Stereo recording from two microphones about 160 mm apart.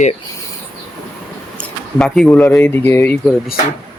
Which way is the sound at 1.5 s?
5° left (ahead or behind).